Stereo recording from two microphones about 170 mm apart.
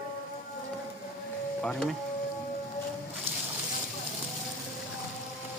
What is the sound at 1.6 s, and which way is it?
Speech, 5° left (ahead or behind).